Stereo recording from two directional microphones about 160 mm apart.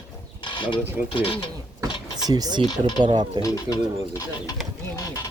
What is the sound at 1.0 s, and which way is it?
Mechanisms, 30° left (ahead or behind).